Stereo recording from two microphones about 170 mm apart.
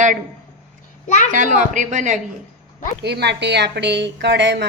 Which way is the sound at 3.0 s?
80° right.